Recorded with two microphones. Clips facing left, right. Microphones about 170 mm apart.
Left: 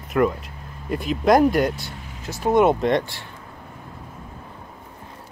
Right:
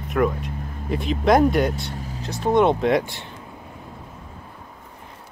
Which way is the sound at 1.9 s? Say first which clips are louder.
Right 6 dB; 40° right (ahead or behind).